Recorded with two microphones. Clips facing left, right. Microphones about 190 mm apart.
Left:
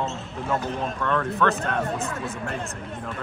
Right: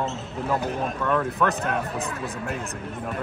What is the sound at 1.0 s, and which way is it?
Speech, 10° right (ahead or behind).